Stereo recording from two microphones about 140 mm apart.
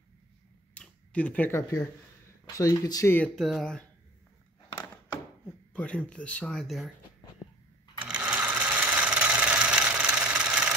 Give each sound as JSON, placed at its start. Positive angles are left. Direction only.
{"t": 0.7, "sound": "a sound", "side_deg": 10}
{"t": 2.4, "sound": "speech", "side_deg": 25}
{"t": 3.3, "sound": "speech", "side_deg": 0}
{"t": 5.7, "sound": "speech", "side_deg": 10}
{"t": 8.0, "sound": "sewing machine", "side_deg": -10}